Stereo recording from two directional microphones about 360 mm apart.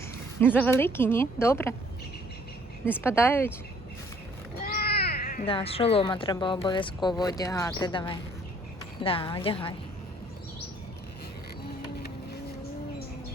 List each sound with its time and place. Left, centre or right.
0.3 s a woman's voice: centre
2.8 s speech: centre
4.6 s speech: left